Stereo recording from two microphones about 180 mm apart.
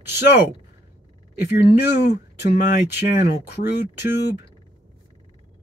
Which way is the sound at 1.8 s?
70° left (ahead or behind).